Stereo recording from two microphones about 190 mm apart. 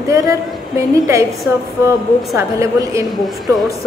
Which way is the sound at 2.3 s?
15° right (ahead or behind).